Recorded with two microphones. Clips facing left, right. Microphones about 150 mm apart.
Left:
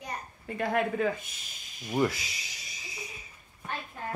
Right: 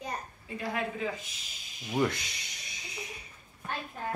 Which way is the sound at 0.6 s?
55° left (ahead or behind).